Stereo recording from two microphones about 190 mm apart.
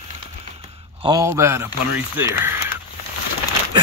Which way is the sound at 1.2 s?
15° right (ahead or behind).